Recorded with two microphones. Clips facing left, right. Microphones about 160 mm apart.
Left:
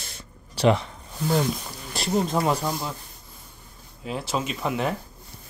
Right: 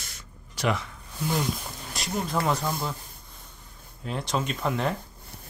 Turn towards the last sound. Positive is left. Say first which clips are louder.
# left 1 dB
turn(degrees=5)  # may be behind; listen again after turning